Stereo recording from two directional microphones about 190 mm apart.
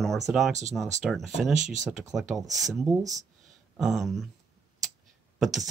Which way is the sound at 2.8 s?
15° right (ahead or behind).